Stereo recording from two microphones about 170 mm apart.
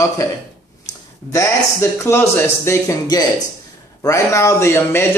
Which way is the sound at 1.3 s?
15° left (ahead or behind).